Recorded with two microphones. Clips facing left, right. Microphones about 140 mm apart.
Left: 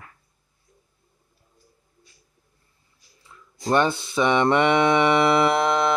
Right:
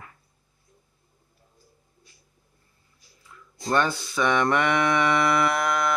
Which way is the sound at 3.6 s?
25° left (ahead or behind).